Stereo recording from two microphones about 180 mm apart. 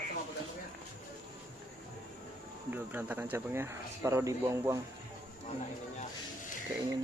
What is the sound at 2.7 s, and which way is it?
Speech, 10° right (ahead or behind).